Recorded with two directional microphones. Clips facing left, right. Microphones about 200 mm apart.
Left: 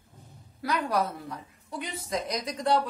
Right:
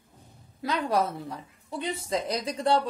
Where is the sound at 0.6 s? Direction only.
25° right (ahead or behind).